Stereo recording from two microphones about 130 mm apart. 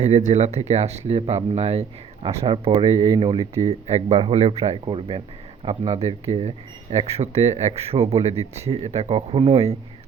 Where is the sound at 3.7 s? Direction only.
55° right (ahead or behind).